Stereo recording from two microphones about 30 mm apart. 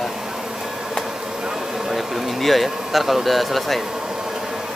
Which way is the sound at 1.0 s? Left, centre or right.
Centre.